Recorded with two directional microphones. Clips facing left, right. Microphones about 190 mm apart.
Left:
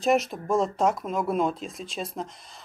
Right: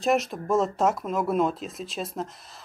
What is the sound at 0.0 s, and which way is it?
Speech, centre (ahead or behind).